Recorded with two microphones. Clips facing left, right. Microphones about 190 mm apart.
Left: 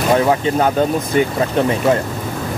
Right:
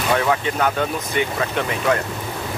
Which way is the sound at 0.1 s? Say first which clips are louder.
Left 5 dB; 35° left (ahead or behind).